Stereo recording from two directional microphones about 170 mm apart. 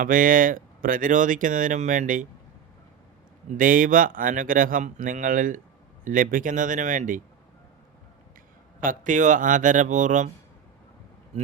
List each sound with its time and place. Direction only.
0.0 s speech: 55° right (ahead or behind)
3.6 s speech: 55° right (ahead or behind)
8.8 s speech: 50° right (ahead or behind)